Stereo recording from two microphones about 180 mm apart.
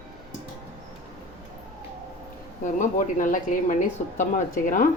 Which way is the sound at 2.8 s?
45° left (ahead or behind).